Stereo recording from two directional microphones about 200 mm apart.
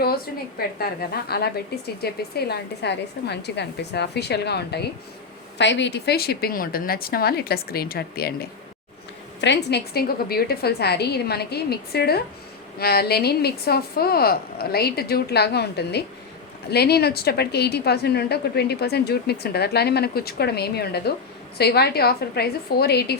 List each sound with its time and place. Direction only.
0.8 s a woman's voice: 50° left (ahead or behind)